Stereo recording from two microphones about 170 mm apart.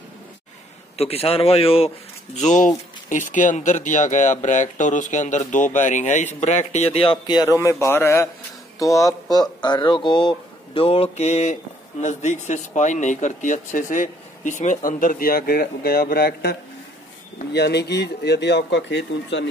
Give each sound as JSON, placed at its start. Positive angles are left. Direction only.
{"t": 0.9, "sound": "speech", "side_deg": 35}
{"t": 2.3, "sound": "speech", "side_deg": 45}
{"t": 7.5, "sound": "speech", "side_deg": 15}
{"t": 17.5, "sound": "speech", "side_deg": 75}